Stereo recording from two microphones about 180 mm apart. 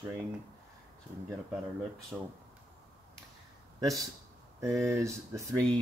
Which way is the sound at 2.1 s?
Centre (ahead or behind).